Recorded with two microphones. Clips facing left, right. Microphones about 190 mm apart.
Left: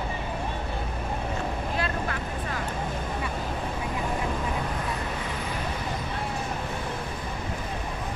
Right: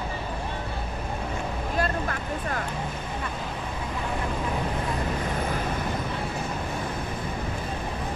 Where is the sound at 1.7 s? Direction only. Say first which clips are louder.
Right 6 dB; 45° right (ahead or behind).